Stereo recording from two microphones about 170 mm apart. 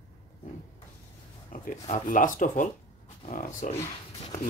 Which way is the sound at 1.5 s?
50° left (ahead or behind).